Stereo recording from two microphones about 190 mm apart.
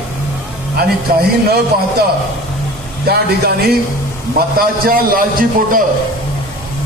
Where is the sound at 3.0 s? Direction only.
55° right (ahead or behind).